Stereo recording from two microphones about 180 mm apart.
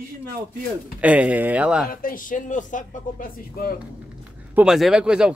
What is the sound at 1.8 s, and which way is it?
A man's voice, 50° left (ahead or behind).